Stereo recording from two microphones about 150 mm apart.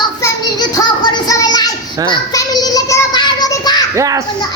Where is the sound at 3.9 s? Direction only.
20° right (ahead or behind).